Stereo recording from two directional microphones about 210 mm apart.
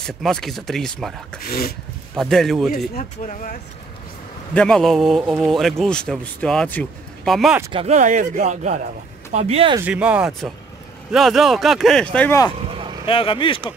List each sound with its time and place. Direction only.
0.0 s speech: centre (ahead or behind)
1.4 s speech: 45° left (ahead or behind)
2.1 s speech: centre (ahead or behind)
2.9 s speech: 40° left (ahead or behind)
4.6 s speech: 5° left (ahead or behind)
7.7 s speech: 30° right (ahead or behind)
9.8 s speech: 5° right (ahead or behind)
13.0 s speech: 25° left (ahead or behind)